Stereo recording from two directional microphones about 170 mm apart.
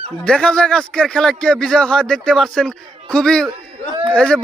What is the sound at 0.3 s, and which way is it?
Speech, 5° left (ahead or behind).